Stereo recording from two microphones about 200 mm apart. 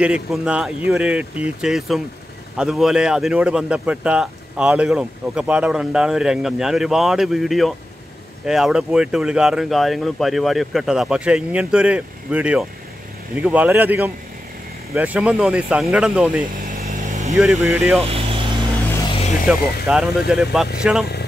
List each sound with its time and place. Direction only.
0.0 s speech: 5° right (ahead or behind)
16.6 s vehicle: 40° right (ahead or behind)
17.6 s speech: 10° right (ahead or behind)
18.0 s vehicle: 30° right (ahead or behind)
19.4 s speech: 5° right (ahead or behind)